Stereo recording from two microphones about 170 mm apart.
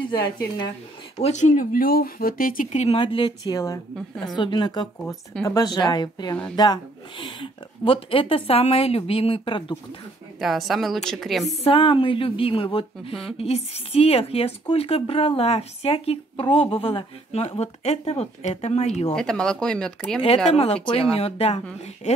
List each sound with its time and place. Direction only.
0.1 s a woman's voice: 25° left (ahead or behind)
1.2 s a woman's voice: 50° left (ahead or behind); by 9.8 s 30° left (ahead or behind)
10.4 s speech: centre (ahead or behind)
11.4 s speech: 35° left (ahead or behind)
19.1 s speech: 5° left (ahead or behind)
20.4 s speech: 35° left (ahead or behind)